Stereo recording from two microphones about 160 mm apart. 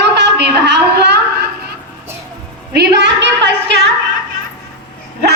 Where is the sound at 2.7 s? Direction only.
90° right.